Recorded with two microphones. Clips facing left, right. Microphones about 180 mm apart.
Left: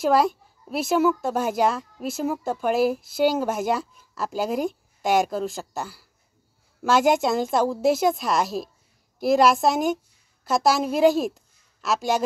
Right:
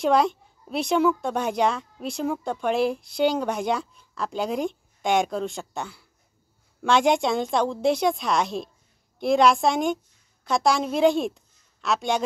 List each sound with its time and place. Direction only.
0.0 s a woman's voice: 5° left (ahead or behind)